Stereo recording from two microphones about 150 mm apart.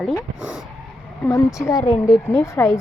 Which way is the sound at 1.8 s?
55° left (ahead or behind).